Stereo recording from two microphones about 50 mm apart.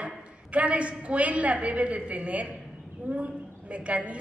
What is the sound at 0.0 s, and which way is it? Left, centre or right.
A woman's voice, right.